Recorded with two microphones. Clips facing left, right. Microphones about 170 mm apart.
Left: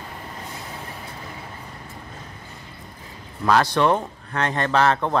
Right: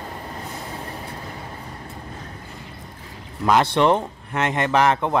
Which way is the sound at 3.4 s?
20° right (ahead or behind).